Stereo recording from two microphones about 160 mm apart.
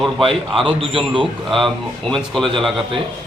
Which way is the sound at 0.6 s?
30° right (ahead or behind).